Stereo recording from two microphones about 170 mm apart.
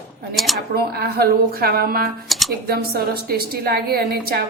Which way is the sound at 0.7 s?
65° right (ahead or behind).